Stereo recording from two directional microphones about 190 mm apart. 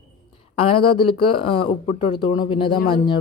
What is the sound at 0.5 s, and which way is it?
Speech, 30° left (ahead or behind).